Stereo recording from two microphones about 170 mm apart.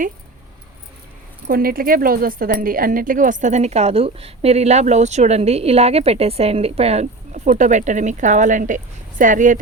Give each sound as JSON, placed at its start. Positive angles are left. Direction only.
{"t": 1.5, "sound": "speech", "side_deg": -60}